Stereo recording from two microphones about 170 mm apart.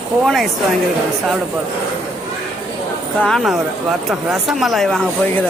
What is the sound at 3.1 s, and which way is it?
Speech, 5° left (ahead or behind).